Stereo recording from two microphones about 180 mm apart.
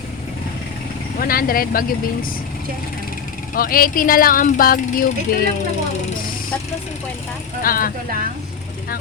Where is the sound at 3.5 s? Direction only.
55° left (ahead or behind).